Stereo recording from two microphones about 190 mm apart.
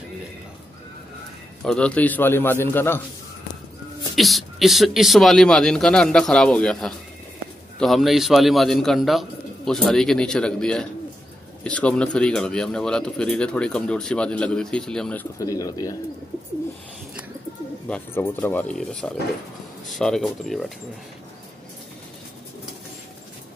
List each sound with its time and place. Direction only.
1.6 s a man's voice: 5° left (ahead or behind)
4.1 s speech: centre (ahead or behind)
15.3 s a man's voice: 15° left (ahead or behind)
17.8 s a man's voice: 5° left (ahead or behind)